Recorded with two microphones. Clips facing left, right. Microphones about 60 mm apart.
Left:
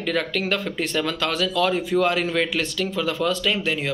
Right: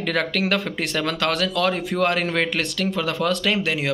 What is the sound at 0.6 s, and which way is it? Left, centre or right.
Speech, right.